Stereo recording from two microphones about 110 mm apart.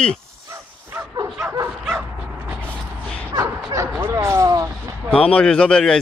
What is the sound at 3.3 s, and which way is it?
Speech, 25° right (ahead or behind).